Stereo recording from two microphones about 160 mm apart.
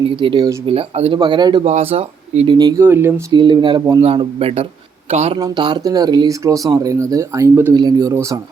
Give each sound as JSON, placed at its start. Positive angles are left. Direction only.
{"t": 0.2, "sound": "speech", "side_deg": -30}
{"t": 1.6, "sound": "speech", "side_deg": -40}
{"t": 2.6, "sound": "speech", "side_deg": -25}
{"t": 2.8, "sound": "speech", "side_deg": -15}
{"t": 3.3, "sound": "speech", "side_deg": -30}
{"t": 5.4, "sound": "speech", "side_deg": -25}